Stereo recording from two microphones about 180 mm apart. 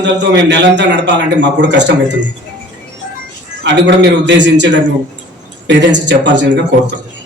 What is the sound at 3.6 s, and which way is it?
A man's voice, 80° right.